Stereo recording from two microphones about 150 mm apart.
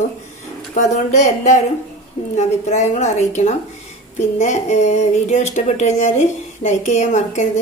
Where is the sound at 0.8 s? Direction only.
55° left (ahead or behind).